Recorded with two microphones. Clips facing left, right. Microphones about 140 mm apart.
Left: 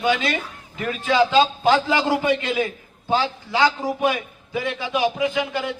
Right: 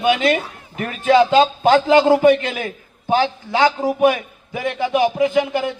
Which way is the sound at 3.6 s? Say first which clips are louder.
Right 5 dB; 20° right (ahead or behind).